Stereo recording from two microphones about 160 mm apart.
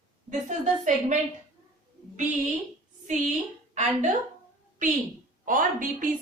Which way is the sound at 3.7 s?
50° right (ahead or behind).